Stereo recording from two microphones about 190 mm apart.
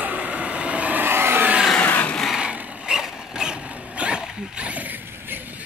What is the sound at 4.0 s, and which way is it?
Dog, 5° right (ahead or behind).